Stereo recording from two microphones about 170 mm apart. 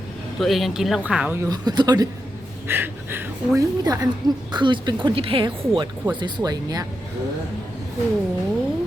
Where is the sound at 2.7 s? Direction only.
10° right (ahead or behind).